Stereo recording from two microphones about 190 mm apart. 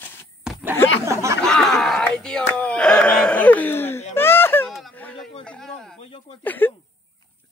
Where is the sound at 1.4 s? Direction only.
5° left (ahead or behind).